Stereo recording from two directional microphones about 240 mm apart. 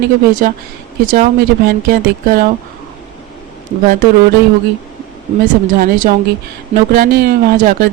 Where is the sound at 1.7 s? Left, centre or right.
Right.